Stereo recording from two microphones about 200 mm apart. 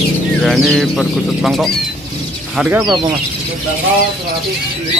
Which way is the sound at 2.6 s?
10° right (ahead or behind).